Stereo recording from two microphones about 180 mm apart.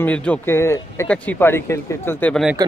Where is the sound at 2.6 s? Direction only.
20° right (ahead or behind).